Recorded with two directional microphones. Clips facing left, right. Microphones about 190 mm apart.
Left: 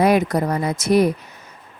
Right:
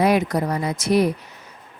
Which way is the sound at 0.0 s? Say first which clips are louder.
Left 2 dB; 50° left (ahead or behind).